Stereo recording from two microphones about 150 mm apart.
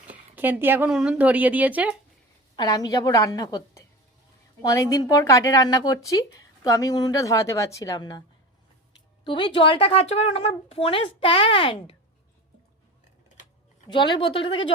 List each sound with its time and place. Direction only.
0.0 s a woman's voice: 10° right (ahead or behind)
2.6 s a woman's voice: 25° left (ahead or behind)
13.9 s speech: 30° left (ahead or behind)